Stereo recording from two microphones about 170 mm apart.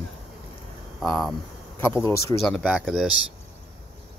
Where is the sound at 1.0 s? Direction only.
Centre (ahead or behind).